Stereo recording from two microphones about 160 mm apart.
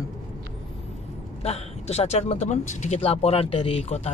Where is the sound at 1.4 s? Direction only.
40° left (ahead or behind).